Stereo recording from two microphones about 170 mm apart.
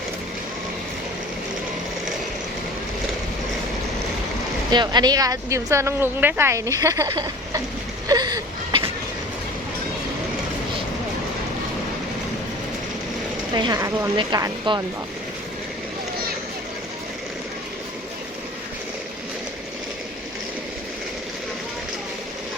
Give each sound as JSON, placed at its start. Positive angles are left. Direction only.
{"t": 4.7, "sound": "a woman's voice", "side_deg": -25}
{"t": 8.0, "sound": "a sound", "side_deg": -20}
{"t": 13.5, "sound": "speech", "side_deg": -25}